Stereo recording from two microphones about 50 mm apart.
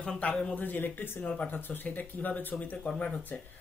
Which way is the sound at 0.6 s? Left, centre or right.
Left.